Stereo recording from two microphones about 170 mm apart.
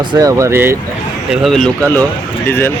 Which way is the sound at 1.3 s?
Centre (ahead or behind).